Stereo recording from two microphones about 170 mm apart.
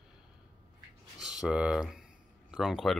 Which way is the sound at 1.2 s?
5° right (ahead or behind).